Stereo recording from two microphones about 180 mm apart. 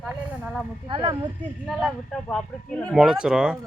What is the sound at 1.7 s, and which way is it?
Speech, centre (ahead or behind).